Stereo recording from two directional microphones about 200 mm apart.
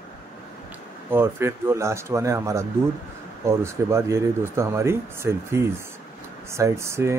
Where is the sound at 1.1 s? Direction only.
10° right (ahead or behind).